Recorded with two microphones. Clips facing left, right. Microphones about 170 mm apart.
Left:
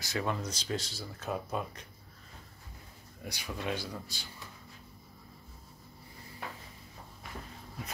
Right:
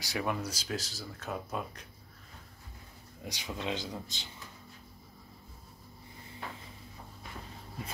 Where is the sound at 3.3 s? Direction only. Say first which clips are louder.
Even; 20° right (ahead or behind).